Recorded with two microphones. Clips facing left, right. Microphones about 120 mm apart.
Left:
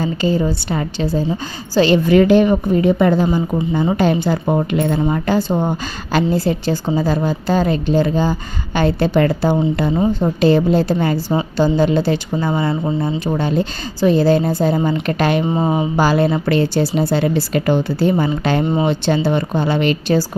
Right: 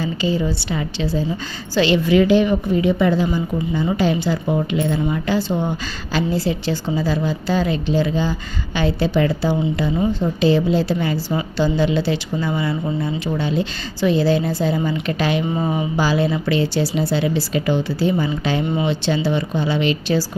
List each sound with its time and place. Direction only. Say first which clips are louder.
0.0 s a woman's voice: left 3 dB; 45° left (ahead or behind)
15.4 s speech: left 4 dB; 30° left (ahead or behind)
16.0 s a woman's voice: left 4 dB; 55° left (ahead or behind)
18.6 s speech: left 4 dB; 35° left (ahead or behind)
18.9 s a woman's voice: left 3 dB; 50° left (ahead or behind)